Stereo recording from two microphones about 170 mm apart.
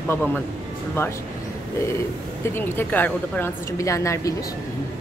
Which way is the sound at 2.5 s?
10° left (ahead or behind).